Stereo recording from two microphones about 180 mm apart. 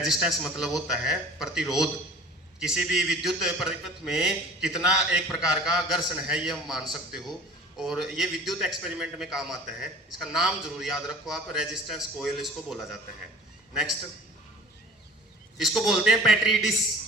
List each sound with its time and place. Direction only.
0.0 s a man's voice: centre (ahead or behind)
15.6 s a man's voice: centre (ahead or behind)